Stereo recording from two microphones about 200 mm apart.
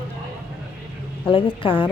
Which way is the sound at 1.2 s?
25° left (ahead or behind).